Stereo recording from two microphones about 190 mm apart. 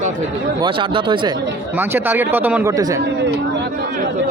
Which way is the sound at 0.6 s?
25° right (ahead or behind).